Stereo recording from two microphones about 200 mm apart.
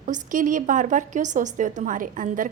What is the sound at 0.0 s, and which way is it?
A woman's voice, 40° right (ahead or behind).